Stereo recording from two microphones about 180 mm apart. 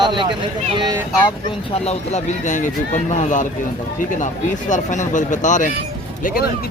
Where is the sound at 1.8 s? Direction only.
40° left (ahead or behind).